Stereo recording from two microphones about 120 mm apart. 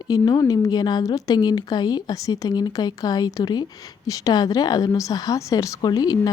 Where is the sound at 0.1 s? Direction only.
30° left (ahead or behind).